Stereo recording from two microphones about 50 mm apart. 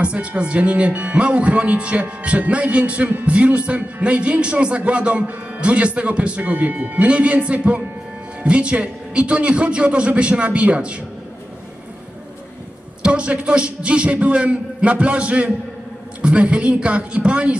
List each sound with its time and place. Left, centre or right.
0.0 s speech: right
13.0 s speech: right